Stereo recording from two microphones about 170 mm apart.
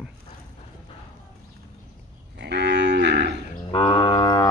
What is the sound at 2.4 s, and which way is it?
Livestock, 75° right (ahead or behind).